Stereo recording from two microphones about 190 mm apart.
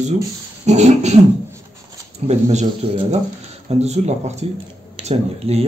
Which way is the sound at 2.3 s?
35° right (ahead or behind).